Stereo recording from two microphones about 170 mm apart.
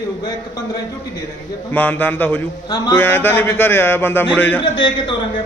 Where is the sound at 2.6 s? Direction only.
20° left (ahead or behind).